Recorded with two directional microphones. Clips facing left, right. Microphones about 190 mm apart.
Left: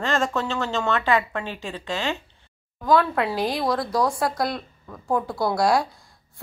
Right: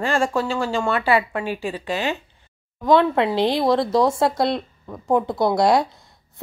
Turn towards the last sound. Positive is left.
turn(degrees=-20)  # may be behind; listen again after turning